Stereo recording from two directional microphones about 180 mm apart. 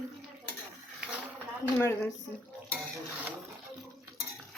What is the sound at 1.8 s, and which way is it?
Speech, 15° left (ahead or behind).